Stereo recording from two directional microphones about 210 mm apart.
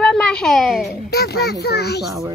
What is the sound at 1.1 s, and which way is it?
Speech, 50° left (ahead or behind).